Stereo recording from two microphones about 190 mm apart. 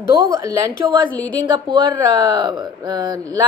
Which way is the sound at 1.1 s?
10° left (ahead or behind).